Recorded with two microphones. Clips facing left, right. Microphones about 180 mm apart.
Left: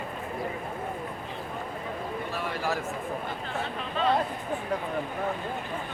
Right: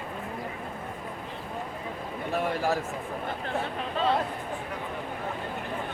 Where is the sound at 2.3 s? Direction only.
50° right (ahead or behind).